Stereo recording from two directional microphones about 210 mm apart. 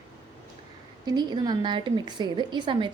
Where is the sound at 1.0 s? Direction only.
20° right (ahead or behind).